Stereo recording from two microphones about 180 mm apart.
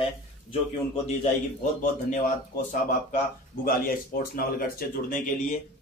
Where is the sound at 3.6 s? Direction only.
55° left (ahead or behind).